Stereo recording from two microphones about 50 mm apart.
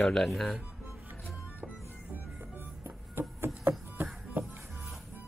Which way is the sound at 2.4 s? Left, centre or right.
Right.